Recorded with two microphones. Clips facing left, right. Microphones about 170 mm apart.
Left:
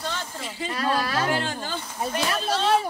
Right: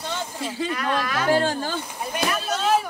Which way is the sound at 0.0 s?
15° right (ahead or behind).